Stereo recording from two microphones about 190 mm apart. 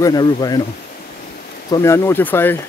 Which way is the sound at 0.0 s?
20° left (ahead or behind).